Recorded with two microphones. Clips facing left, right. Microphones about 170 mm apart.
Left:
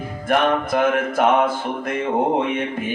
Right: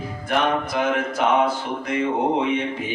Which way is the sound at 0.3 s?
50° left (ahead or behind).